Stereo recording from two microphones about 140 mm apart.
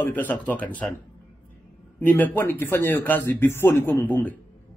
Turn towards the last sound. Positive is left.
turn(degrees=10)  # may be behind; listen again after turning